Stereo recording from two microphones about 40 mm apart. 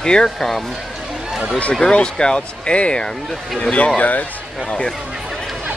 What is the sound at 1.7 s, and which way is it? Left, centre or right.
Speech, left.